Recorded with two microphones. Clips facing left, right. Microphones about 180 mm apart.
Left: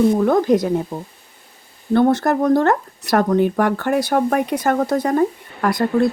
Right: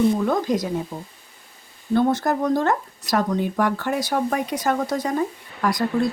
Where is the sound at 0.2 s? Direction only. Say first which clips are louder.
Left 6 dB; 55° left (ahead or behind).